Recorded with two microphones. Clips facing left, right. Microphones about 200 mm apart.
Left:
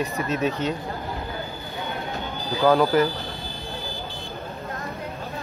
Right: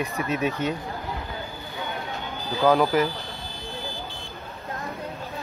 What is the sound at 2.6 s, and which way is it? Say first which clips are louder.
Speech: left 1 dB; centre (ahead or behind).